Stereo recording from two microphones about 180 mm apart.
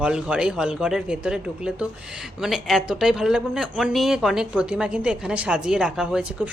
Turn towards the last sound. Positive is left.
turn(degrees=-5)  # may be behind; listen again after turning